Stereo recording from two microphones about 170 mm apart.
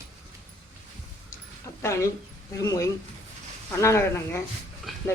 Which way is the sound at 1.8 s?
15° left (ahead or behind).